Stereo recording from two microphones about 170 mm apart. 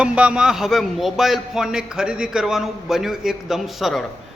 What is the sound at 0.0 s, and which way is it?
A man's voice, 5° right (ahead or behind).